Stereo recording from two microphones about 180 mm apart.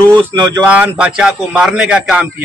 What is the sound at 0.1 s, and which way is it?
Speech, 25° right (ahead or behind).